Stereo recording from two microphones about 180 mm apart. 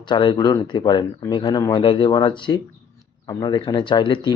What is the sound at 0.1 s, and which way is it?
A man's voice, 25° left (ahead or behind).